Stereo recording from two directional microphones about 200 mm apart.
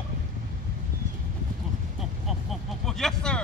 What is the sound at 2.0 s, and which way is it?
Vehicle, centre (ahead or behind).